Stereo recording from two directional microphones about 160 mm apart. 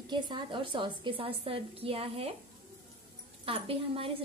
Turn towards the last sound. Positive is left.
turn(degrees=-35)  # may be behind; listen again after turning